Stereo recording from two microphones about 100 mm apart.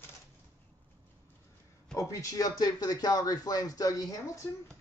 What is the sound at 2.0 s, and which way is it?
Speech, 35° left (ahead or behind).